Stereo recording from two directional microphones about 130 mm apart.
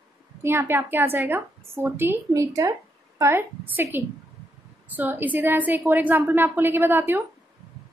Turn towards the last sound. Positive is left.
turn(degrees=-15)  # may be behind; listen again after turning